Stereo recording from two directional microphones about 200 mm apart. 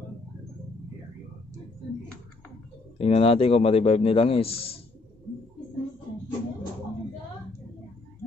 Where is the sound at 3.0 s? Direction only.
30° left (ahead or behind).